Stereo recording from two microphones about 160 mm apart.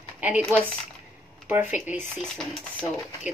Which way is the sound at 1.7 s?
10° right (ahead or behind).